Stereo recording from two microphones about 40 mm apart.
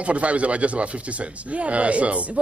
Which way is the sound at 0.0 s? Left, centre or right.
Right.